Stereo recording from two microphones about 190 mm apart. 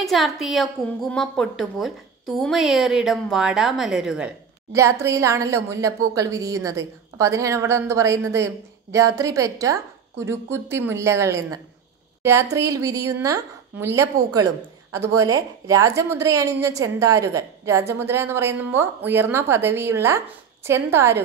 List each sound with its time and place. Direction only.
0.0 s a woman's voice: centre (ahead or behind)
4.7 s a woman's voice: 15° right (ahead or behind)